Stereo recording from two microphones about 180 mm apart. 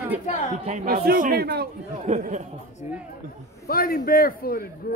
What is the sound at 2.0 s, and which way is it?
Speech, 40° right (ahead or behind).